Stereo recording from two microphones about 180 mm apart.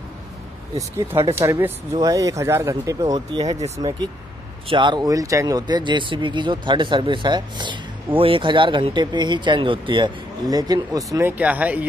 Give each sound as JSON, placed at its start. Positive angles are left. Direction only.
{"t": 0.7, "sound": "speech", "side_deg": -15}
{"t": 3.5, "sound": "speech", "side_deg": -35}
{"t": 4.6, "sound": "speech", "side_deg": -25}